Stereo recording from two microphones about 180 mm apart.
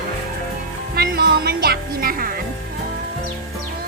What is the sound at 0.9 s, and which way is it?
Music, 60° right (ahead or behind).